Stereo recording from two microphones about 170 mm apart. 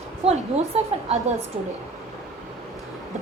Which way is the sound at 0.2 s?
40° right (ahead or behind).